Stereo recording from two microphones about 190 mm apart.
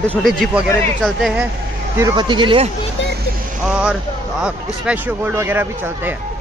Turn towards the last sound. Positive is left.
turn(degrees=-10)  # may be behind; listen again after turning